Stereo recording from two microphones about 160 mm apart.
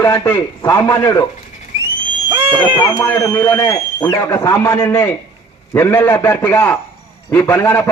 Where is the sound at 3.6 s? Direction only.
25° left (ahead or behind).